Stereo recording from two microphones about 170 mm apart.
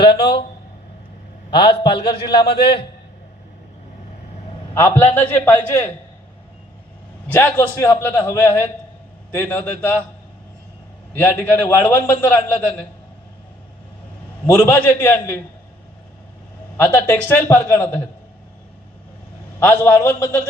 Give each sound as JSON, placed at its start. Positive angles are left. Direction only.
{"t": 1.5, "sound": "a man's voice", "side_deg": 25}
{"t": 2.6, "sound": "a man's voice", "side_deg": 70}
{"t": 4.7, "sound": "a man's voice", "side_deg": 15}
{"t": 7.3, "sound": "a man's voice", "side_deg": 10}
{"t": 11.1, "sound": "a man's voice", "side_deg": 10}
{"t": 14.6, "sound": "a man's voice", "side_deg": 15}
{"t": 16.7, "sound": "a man's voice", "side_deg": 15}
{"t": 19.5, "sound": "a man's voice", "side_deg": 15}